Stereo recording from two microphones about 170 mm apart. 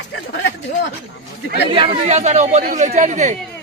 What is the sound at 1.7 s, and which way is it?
Speech, 35° right (ahead or behind).